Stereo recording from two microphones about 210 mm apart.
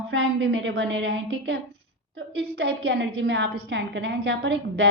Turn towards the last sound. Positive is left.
turn(degrees=-60)  # may be behind; listen again after turning